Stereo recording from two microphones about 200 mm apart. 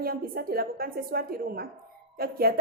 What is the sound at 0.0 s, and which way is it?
A woman's voice, 50° right (ahead or behind).